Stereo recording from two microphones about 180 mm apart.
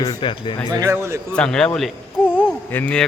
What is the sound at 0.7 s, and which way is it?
Speech, 20° right (ahead or behind).